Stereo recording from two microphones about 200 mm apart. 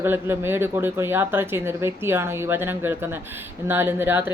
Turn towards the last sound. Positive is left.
turn(degrees=-10)  # may be behind; listen again after turning